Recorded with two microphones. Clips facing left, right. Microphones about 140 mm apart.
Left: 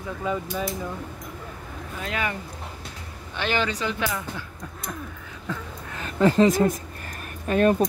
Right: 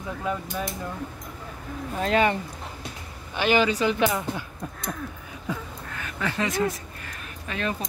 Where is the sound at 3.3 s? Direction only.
10° right (ahead or behind).